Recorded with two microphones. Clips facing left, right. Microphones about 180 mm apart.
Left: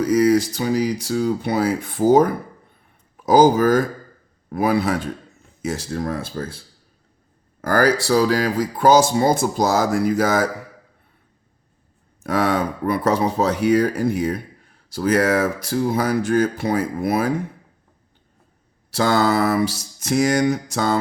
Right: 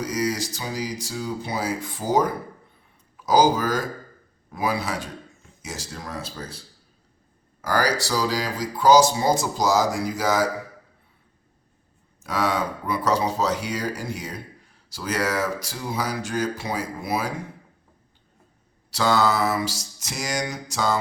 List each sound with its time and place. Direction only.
0.0 s speech: 55° left (ahead or behind)
7.6 s speech: 55° left (ahead or behind)
12.2 s speech: 55° left (ahead or behind)
18.9 s speech: 50° left (ahead or behind)